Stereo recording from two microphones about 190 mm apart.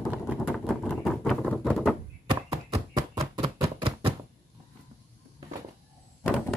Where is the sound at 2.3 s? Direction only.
20° right (ahead or behind).